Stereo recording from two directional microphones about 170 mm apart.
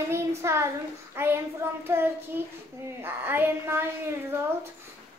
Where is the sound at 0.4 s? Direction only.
15° right (ahead or behind).